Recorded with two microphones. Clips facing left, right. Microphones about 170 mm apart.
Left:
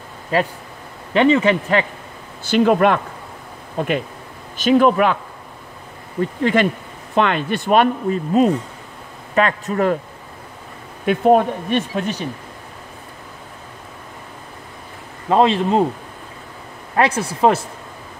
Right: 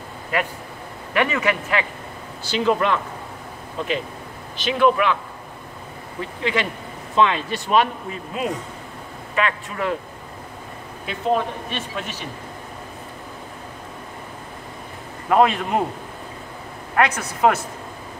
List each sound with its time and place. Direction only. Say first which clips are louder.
0.3 s a man's voice: left 5 dB; 30° left (ahead or behind)
2.4 s speech: left 6 dB; 55° left (ahead or behind)
6.4 s speech: left 6 dB; 50° left (ahead or behind)
11.1 s speech: left 8 dB; 55° left (ahead or behind)
15.2 s a man's voice: left 2 dB; 25° left (ahead or behind)
16.9 s speech: left 3 dB; 30° left (ahead or behind)